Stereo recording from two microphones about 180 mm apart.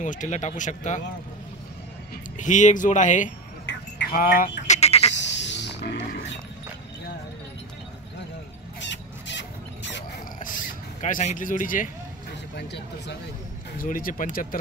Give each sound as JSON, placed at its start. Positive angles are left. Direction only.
{"t": 0.0, "sound": "speech", "side_deg": 45}
{"t": 2.3, "sound": "speech", "side_deg": 45}
{"t": 4.1, "sound": "a sound", "side_deg": 50}
{"t": 4.7, "sound": "sheep", "side_deg": 35}
{"t": 5.1, "sound": "a sound", "side_deg": 80}
{"t": 8.8, "sound": "rodents", "side_deg": 80}
{"t": 11.0, "sound": "speech", "side_deg": 40}
{"t": 12.5, "sound": "speech", "side_deg": 70}
{"t": 13.7, "sound": "speech", "side_deg": 50}